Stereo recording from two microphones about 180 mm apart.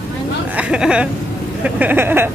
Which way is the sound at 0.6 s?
5° right (ahead or behind).